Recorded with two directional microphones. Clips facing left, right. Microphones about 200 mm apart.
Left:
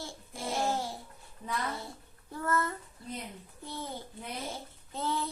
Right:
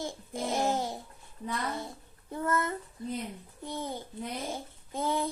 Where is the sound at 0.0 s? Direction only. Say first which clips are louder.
Right 5 dB; 20° right (ahead or behind).